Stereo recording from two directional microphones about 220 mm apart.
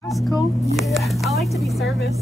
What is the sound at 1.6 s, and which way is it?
Speech, centre (ahead or behind).